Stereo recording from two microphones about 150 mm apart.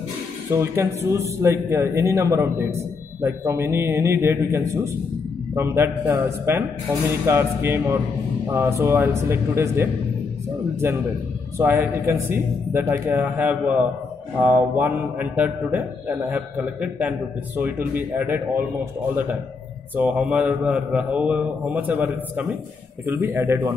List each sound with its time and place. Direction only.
0.5 s a man's voice: 20° right (ahead or behind)
20.0 s a man's voice: 10° right (ahead or behind)